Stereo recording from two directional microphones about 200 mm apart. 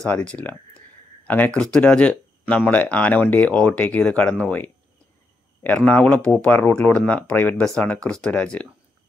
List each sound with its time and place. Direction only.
0.0 s speech: 5° left (ahead or behind)